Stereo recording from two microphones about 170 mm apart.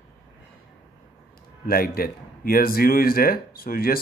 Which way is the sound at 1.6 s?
60° left (ahead or behind).